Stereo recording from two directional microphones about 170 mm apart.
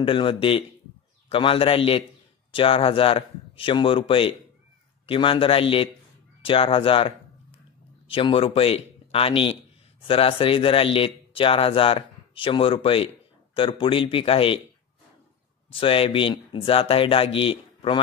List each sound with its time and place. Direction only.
0.0 s speech: 30° left (ahead or behind)
15.7 s speech: 30° left (ahead or behind)